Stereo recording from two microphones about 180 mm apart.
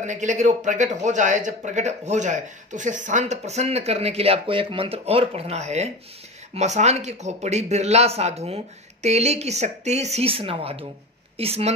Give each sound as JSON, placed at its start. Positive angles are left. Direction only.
{"t": 0.0, "sound": "speech", "side_deg": -40}